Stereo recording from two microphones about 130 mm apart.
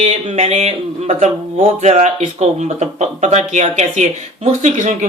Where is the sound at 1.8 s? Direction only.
60° right (ahead or behind).